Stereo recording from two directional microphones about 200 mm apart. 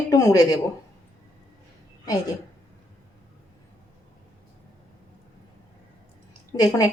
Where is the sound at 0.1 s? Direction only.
15° left (ahead or behind).